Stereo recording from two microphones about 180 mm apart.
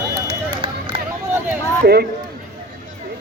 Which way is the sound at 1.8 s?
60° right (ahead or behind).